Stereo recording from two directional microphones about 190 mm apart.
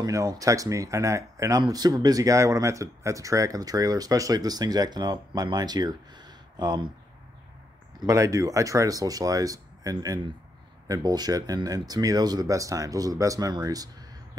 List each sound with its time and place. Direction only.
0.0 s speech: 20° right (ahead or behind)
8.0 s speech: 15° right (ahead or behind)